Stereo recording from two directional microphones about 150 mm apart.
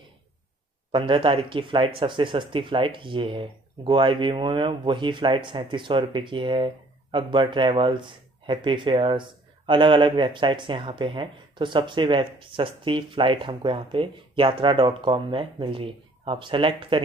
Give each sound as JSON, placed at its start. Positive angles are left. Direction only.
{"t": 0.9, "sound": "speech", "side_deg": -35}